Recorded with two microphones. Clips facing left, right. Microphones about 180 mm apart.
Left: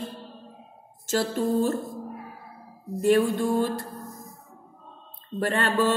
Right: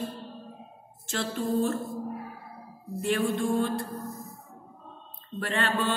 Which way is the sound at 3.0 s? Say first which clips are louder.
Left 6 dB; 45° left (ahead or behind).